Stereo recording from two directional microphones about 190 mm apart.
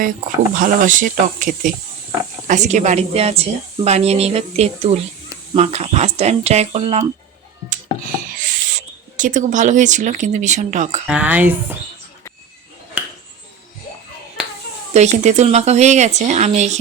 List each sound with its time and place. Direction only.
0.5 s a woman's voice: 45° right (ahead or behind)
8.4 s speech: 45° right (ahead or behind)
11.0 s speech: 10° right (ahead or behind)
13.0 s a sound: 10° right (ahead or behind)
14.9 s a woman's voice: 35° right (ahead or behind)